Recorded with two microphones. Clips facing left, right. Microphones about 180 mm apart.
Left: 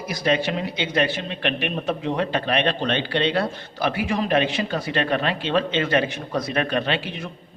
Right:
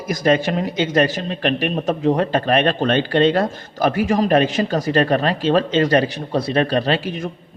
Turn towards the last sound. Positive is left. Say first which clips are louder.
# right 5 dB
turn(degrees=-45)  # may be behind; listen again after turning